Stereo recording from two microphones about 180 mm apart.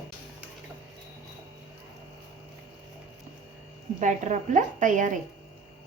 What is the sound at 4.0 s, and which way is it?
A woman's voice, 45° right (ahead or behind).